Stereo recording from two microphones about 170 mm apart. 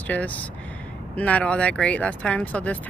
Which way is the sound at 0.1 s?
10° left (ahead or behind).